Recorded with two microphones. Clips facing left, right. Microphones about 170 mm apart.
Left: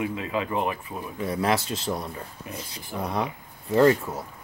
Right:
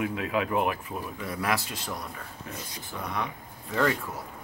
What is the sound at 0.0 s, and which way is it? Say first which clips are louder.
Speech: even; centre (ahead or behind).